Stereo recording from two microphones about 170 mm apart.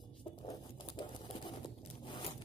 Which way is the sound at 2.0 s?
30° left (ahead or behind).